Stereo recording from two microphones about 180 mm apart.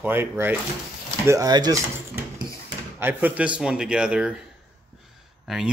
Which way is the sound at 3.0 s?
10° right (ahead or behind).